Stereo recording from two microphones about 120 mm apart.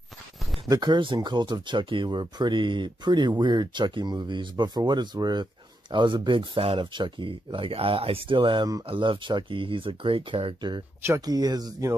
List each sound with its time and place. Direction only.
0.7 s speech: 35° right (ahead or behind)
11.1 s speech: 35° right (ahead or behind)